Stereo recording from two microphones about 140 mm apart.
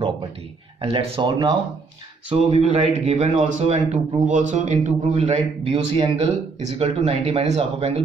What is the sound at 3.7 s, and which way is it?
Speech, 45° right (ahead or behind).